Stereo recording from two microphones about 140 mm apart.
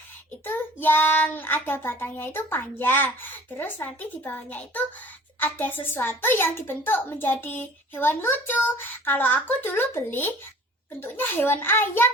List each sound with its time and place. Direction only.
0.4 s a child's voice: 15° left (ahead or behind)